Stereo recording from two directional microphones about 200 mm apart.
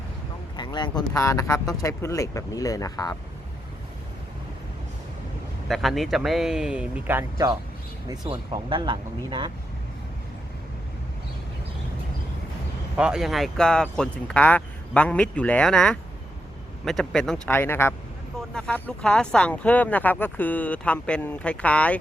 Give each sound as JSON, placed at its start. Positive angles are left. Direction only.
{"t": 0.5, "sound": "speech", "side_deg": 20}
{"t": 5.6, "sound": "speech", "side_deg": 0}
{"t": 8.3, "sound": "speech", "side_deg": -25}
{"t": 13.0, "sound": "speech", "side_deg": -5}